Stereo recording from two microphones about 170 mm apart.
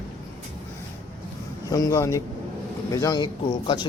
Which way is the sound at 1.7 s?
20° left (ahead or behind).